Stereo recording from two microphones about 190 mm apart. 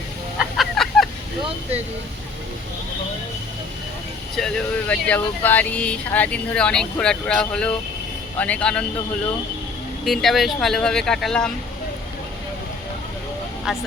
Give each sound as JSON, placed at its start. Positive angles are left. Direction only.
{"t": 0.3, "sound": "a sound", "side_deg": 0}
{"t": 4.4, "sound": "speech", "side_deg": 5}
{"t": 10.1, "sound": "speech", "side_deg": 0}
{"t": 13.7, "sound": "speech", "side_deg": -5}